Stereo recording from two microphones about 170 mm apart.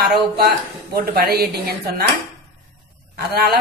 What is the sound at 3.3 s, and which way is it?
Speech, 70° right (ahead or behind).